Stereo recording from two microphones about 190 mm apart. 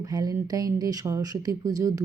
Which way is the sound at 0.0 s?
20° right (ahead or behind).